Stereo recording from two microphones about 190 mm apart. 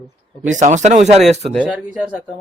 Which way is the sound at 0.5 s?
40° right (ahead or behind).